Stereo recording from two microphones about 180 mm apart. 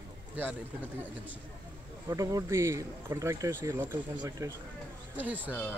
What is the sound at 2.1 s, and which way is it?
Speech, 20° right (ahead or behind).